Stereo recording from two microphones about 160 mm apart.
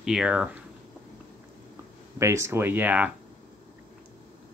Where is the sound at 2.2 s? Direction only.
15° right (ahead or behind).